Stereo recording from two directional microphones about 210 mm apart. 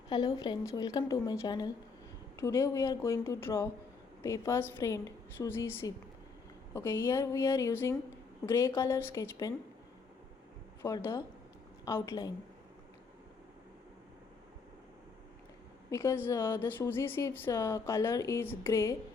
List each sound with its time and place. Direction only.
0.1 s a woman's voice: 20° left (ahead or behind)
10.8 s a woman's voice: 15° left (ahead or behind)
15.9 s a woman's voice: 10° left (ahead or behind)